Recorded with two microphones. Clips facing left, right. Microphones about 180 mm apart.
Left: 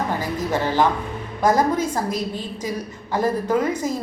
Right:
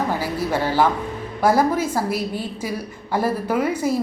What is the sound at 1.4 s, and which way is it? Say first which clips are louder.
A woman's voice: right 1 dB; 10° right (ahead or behind).